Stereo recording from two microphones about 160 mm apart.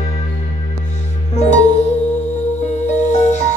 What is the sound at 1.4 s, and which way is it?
Music, 45° left (ahead or behind).